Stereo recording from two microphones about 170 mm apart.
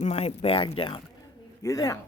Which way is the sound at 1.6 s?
20° left (ahead or behind).